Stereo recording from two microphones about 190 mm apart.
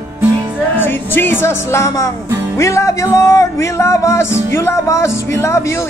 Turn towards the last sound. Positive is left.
turn(degrees=15)  # may be behind; listen again after turning